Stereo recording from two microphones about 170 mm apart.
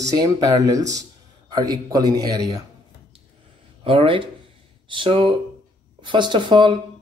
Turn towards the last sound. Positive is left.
turn(degrees=-25)  # may be behind; listen again after turning